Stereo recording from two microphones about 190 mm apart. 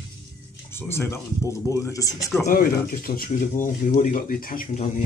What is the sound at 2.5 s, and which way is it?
Speech, 50° left (ahead or behind).